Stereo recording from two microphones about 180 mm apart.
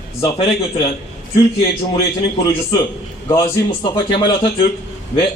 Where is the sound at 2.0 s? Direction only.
20° left (ahead or behind).